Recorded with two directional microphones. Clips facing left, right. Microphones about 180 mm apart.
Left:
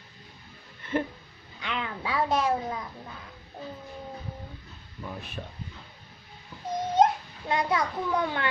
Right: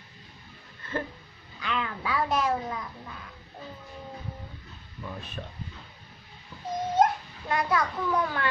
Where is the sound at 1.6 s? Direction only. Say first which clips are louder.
Right 1 dB; 25° left (ahead or behind).